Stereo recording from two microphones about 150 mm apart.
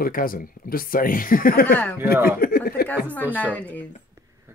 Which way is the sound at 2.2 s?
85° left.